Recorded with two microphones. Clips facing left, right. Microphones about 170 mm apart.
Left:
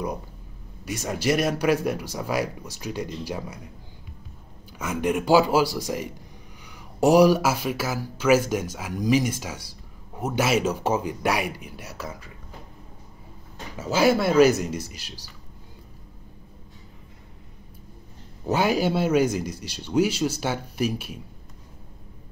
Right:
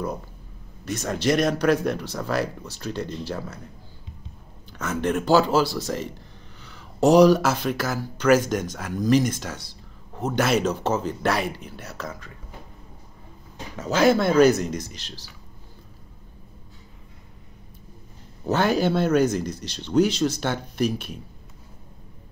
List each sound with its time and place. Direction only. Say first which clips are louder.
0.8 s speech: right 1 dB; 10° left (ahead or behind)
4.7 s speech: even; 10° left (ahead or behind)
13.7 s speech: right 1 dB; 10° left (ahead or behind)
18.4 s speech: right 1 dB; 10° left (ahead or behind)